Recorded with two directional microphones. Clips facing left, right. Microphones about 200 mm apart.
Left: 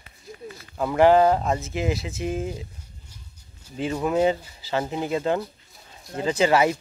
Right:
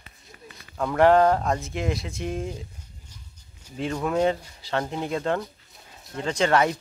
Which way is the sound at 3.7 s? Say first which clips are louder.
Left 2 dB; 5° left (ahead or behind).